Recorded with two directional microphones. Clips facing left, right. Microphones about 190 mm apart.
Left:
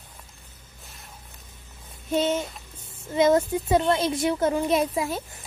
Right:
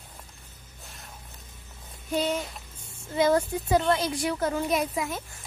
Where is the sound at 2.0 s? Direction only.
25° left (ahead or behind).